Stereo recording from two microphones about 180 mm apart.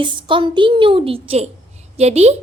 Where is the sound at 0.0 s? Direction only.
25° right (ahead or behind).